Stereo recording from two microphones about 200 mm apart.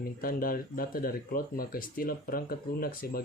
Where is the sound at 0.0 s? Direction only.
45° left (ahead or behind).